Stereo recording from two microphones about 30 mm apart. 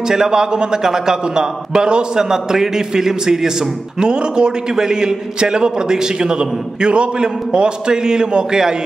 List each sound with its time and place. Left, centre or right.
0.1 s a man's voice: right